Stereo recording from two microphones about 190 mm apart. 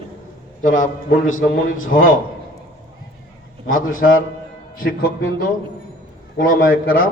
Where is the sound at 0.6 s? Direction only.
45° left (ahead or behind).